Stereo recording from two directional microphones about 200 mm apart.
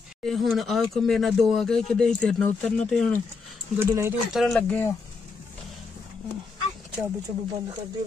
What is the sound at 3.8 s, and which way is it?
Speech, 10° right (ahead or behind).